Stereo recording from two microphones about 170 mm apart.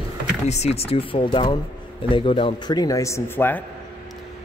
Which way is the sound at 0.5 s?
40° left (ahead or behind).